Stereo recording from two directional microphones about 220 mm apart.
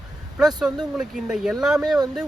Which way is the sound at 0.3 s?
5° right (ahead or behind).